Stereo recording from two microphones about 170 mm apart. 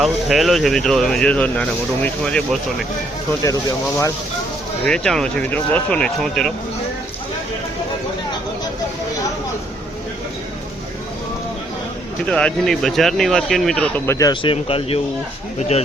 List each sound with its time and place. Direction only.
0.0 s speech: centre (ahead or behind)
4.9 s speech: 5° left (ahead or behind)
12.3 s speech: 5° left (ahead or behind)
14.2 s speech: 25° left (ahead or behind)